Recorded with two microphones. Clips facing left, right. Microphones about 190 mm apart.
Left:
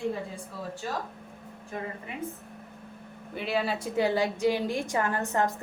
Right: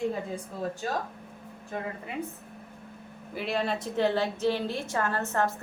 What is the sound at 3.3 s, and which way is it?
A woman's voice, 5° left (ahead or behind).